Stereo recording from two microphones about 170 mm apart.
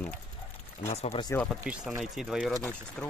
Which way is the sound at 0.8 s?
35° left (ahead or behind).